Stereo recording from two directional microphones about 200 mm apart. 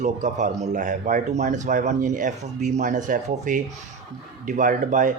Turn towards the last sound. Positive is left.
turn(degrees=-40)  # may be behind; listen again after turning